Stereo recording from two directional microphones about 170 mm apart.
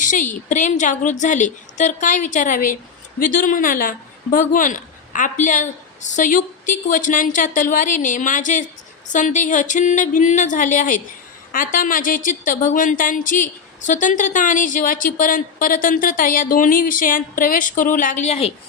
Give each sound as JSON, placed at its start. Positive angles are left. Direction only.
{"t": 0.0, "sound": "a woman's voice", "side_deg": 50}